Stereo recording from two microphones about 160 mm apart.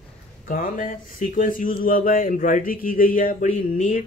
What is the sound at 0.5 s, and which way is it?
Speech, 60° left (ahead or behind).